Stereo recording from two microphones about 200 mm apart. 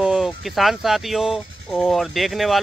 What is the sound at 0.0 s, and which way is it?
Speech, centre (ahead or behind).